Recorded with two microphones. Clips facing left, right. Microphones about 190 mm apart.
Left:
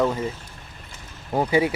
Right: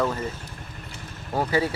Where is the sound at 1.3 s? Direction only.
15° left (ahead or behind).